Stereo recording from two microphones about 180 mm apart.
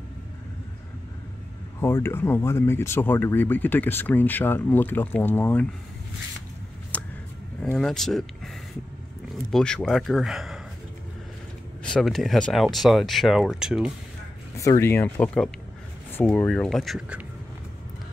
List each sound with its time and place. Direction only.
1.8 s speech: 10° left (ahead or behind)
6.9 s a sound: 5° left (ahead or behind)
7.6 s speech: 5° left (ahead or behind)
9.3 s speech: centre (ahead or behind)
11.8 s speech: 5° left (ahead or behind)
14.6 s speech: 15° left (ahead or behind); by 17.2 s centre (ahead or behind)